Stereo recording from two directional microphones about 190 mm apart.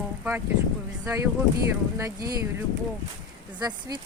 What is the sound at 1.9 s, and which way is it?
Speech, 15° right (ahead or behind).